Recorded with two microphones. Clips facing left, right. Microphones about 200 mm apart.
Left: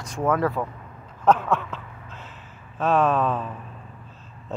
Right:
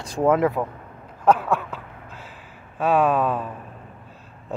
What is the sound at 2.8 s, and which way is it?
Speech, 10° right (ahead or behind).